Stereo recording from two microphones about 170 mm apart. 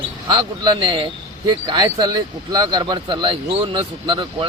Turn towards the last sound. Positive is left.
turn(degrees=-30)  # may be behind; listen again after turning